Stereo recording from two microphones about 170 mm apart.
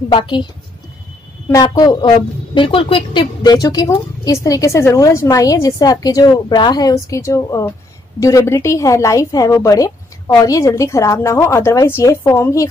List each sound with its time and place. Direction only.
0.1 s a woman's voice: 30° left (ahead or behind)
1.5 s a woman's voice: 25° left (ahead or behind)